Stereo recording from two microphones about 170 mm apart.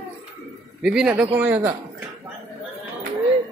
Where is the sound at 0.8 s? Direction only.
5° right (ahead or behind).